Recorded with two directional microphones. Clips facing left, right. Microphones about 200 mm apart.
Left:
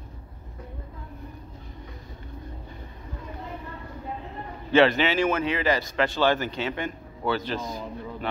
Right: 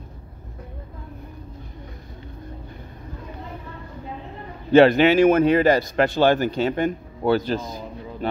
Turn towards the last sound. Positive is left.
turn(degrees=-45)  # may be behind; listen again after turning